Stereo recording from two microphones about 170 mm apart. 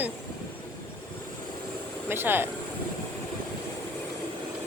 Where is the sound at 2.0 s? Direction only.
10° right (ahead or behind).